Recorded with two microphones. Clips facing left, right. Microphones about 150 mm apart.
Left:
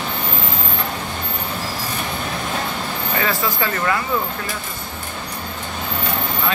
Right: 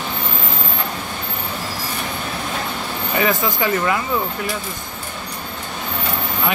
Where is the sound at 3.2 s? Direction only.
20° right (ahead or behind).